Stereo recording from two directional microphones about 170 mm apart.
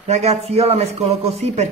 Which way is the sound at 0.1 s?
40° right (ahead or behind).